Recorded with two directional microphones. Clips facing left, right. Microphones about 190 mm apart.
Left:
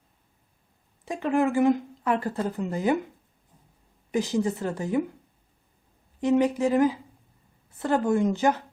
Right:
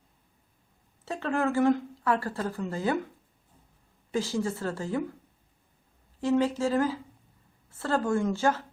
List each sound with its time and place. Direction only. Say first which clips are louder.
1.0 s speech: left 4 dB; 15° left (ahead or behind)
4.1 s speech: left 4 dB; 20° left (ahead or behind)
6.1 s speech: left 3 dB; 15° left (ahead or behind)